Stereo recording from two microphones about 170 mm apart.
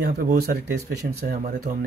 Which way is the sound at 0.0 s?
60° right (ahead or behind).